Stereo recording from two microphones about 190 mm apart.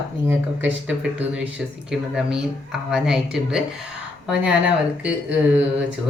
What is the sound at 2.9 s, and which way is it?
Speech, 5° right (ahead or behind).